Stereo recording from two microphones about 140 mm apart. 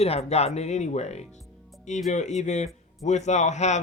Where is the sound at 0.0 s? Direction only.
50° left (ahead or behind).